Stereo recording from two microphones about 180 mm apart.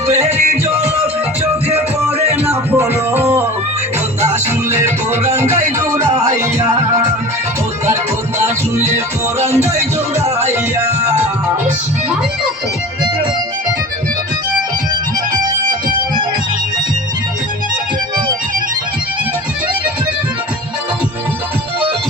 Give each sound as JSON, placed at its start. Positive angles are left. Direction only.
{"t": 0.1, "sound": "music", "side_deg": -35}
{"t": 2.5, "sound": "music", "side_deg": -15}